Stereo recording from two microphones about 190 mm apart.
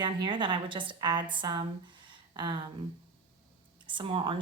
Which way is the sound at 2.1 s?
25° right (ahead or behind).